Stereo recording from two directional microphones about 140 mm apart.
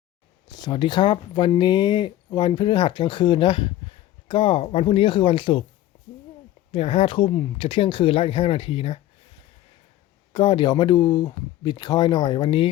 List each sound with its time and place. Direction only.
0.5 s speech: 30° left (ahead or behind)
6.7 s speech: 45° left (ahead or behind)
10.3 s speech: 35° left (ahead or behind)